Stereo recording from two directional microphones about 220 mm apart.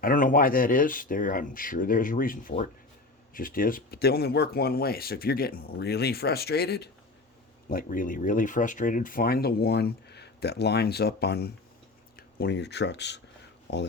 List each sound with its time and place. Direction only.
0.0 s speech: 40° left (ahead or behind)